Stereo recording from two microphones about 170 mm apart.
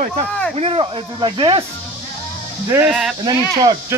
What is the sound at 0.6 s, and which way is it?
Speech, 30° right (ahead or behind).